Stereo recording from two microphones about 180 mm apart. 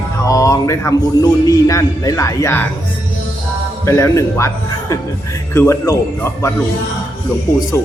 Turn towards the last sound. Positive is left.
turn(degrees=15)  # may be behind; listen again after turning